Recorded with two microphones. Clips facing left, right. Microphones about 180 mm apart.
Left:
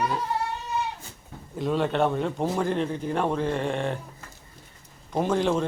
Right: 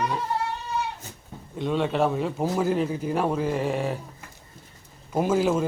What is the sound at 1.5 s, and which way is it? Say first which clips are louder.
A man's voice: even; centre (ahead or behind).